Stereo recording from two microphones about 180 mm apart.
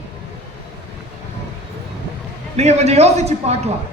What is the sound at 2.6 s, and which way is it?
A man's voice, 40° right (ahead or behind).